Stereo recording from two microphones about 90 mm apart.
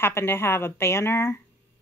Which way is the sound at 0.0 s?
25° left (ahead or behind).